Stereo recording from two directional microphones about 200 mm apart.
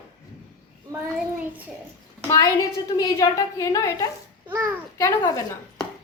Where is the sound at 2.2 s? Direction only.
15° left (ahead or behind).